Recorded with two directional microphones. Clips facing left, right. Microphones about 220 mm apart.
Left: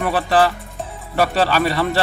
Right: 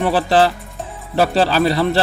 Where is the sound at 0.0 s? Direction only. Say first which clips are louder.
Right 2 dB; 30° right (ahead or behind).